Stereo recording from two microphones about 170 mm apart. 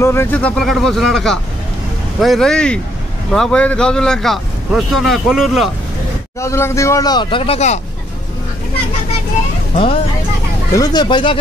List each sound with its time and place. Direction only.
0.0 s speech: 15° left (ahead or behind); by 5.7 s centre (ahead or behind)
6.4 s speech: 15° left (ahead or behind); by 7.8 s 40° left (ahead or behind)
10.7 s speech: 25° left (ahead or behind)